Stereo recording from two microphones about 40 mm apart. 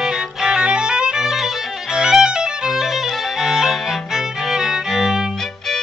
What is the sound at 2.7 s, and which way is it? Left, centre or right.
Violin, centre.